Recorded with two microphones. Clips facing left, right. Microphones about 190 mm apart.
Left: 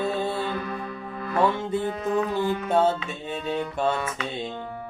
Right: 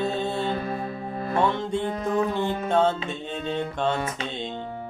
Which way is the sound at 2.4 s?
25° right (ahead or behind).